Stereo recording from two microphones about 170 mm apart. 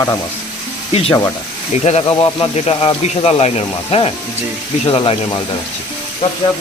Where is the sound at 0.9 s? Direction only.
35° left (ahead or behind).